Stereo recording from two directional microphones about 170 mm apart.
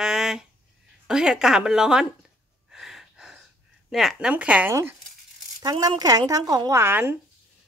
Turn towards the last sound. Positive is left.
turn(degrees=-15)  # may be behind; listen again after turning